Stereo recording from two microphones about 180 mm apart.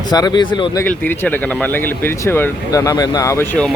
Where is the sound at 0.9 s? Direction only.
10° left (ahead or behind).